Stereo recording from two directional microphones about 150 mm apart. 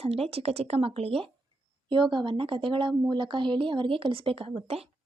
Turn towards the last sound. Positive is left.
turn(degrees=-40)  # may be behind; listen again after turning